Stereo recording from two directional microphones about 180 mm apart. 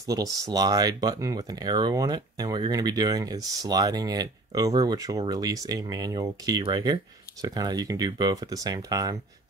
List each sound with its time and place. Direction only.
0.0 s speech: 20° right (ahead or behind)